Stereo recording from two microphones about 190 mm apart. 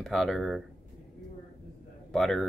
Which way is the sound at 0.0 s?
Centre (ahead or behind).